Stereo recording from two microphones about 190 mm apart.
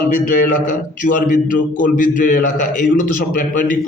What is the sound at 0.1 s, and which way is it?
A man's voice, 45° left (ahead or behind).